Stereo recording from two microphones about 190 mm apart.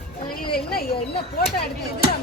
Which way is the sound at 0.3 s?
50° left (ahead or behind).